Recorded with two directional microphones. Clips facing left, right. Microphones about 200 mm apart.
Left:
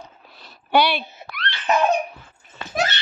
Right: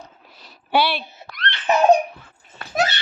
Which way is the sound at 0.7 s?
5° right (ahead or behind).